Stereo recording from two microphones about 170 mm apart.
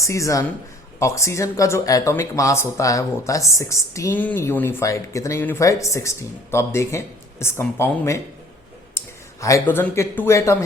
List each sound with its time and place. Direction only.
0.0 s speech: 20° left (ahead or behind)
9.0 s clicking: 20° left (ahead or behind)
9.6 s speech: 15° left (ahead or behind)